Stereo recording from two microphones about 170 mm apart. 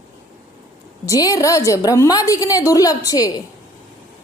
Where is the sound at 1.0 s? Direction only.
20° left (ahead or behind).